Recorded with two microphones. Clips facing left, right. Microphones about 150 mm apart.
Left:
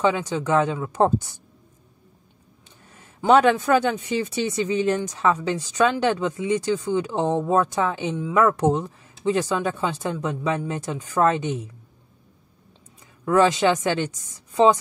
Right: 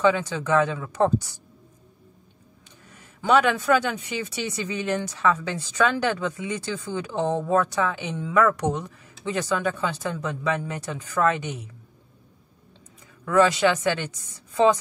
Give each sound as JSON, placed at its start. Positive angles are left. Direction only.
{"t": 0.0, "sound": "speech", "side_deg": 20}
{"t": 3.2, "sound": "speech", "side_deg": 25}
{"t": 13.2, "sound": "speech", "side_deg": 25}